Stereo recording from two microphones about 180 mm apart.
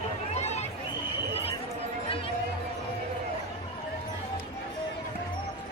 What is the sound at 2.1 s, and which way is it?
Music, 30° left (ahead or behind).